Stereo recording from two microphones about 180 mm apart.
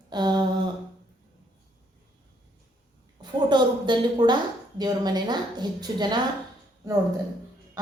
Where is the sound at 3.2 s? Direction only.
25° right (ahead or behind).